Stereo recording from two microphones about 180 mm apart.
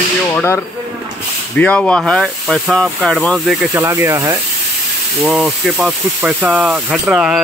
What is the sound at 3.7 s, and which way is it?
Speech, 15° right (ahead or behind).